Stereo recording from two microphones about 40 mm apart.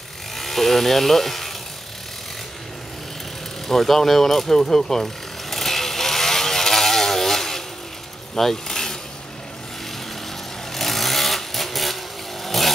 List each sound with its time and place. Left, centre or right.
0.4 s speech: centre
3.6 s speech: centre
4.6 s vehicle: centre
8.4 s speech: centre
10.7 s chainsaw: centre
12.4 s vehicle: centre